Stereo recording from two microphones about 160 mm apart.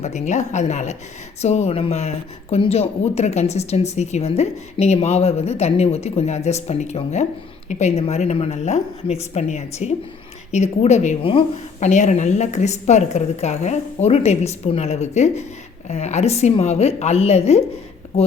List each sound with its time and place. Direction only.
0.0 s a woman's voice: 45° left (ahead or behind)
11.9 s a woman's voice: 45° left (ahead or behind)